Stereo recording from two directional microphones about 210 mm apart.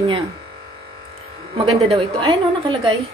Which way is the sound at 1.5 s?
25° right (ahead or behind).